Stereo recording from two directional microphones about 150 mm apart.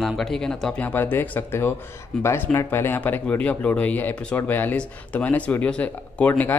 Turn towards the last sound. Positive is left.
turn(degrees=10)  # may be behind; listen again after turning